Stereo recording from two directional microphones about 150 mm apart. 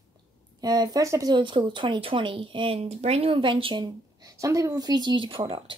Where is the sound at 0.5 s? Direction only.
25° right (ahead or behind).